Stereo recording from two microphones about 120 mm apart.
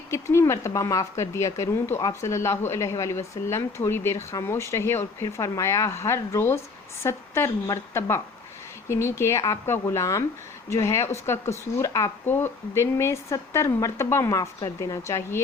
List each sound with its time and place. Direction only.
0.1 s speech: 25° left (ahead or behind)